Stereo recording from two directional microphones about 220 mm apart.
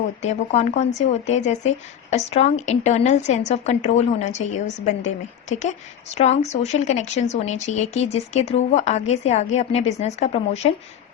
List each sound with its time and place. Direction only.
0.2 s speech: 30° left (ahead or behind)